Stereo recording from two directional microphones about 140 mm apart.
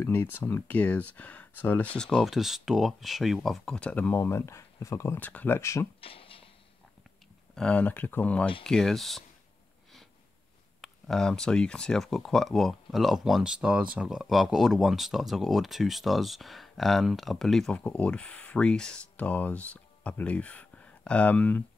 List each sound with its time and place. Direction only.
0.0 s speech: 15° left (ahead or behind)
5.9 s a sound: 40° left (ahead or behind)
7.5 s speech: 10° left (ahead or behind)
10.8 s speech: 5° left (ahead or behind)